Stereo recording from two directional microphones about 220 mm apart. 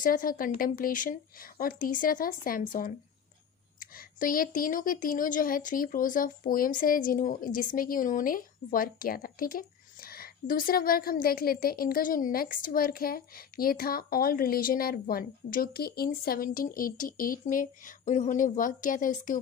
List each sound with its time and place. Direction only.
0.0 s speech: 40° left (ahead or behind)